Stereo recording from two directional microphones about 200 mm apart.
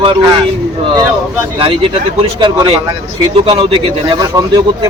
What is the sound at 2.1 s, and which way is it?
A man's voice, 25° right (ahead or behind).